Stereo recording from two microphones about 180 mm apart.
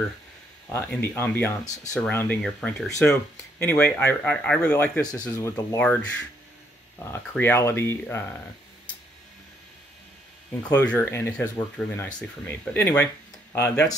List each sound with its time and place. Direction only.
0.7 s speech: 10° left (ahead or behind)
10.7 s speech: 10° left (ahead or behind)